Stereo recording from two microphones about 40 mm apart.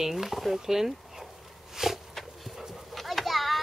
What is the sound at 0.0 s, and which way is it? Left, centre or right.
Speech, centre.